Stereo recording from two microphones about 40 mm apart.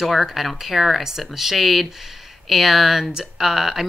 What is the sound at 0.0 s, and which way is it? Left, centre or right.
Speech, centre.